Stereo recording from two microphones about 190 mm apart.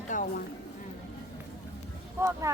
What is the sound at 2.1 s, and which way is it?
Speech, 15° right (ahead or behind).